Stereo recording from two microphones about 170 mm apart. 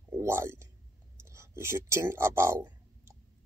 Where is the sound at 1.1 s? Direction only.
15° right (ahead or behind).